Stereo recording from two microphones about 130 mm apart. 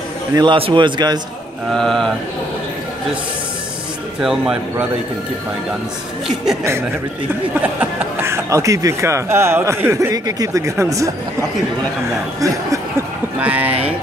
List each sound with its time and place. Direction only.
0.3 s a man's voice: 30° right (ahead or behind)
0.6 s a man's voice: 40° right (ahead or behind)
1.7 s speech: 5° left (ahead or behind)
4.2 s speech: 5° right (ahead or behind)
6.2 s speech: 5° right (ahead or behind)
7.6 s speech: 15° right (ahead or behind)
12.4 s speech: 25° right (ahead or behind)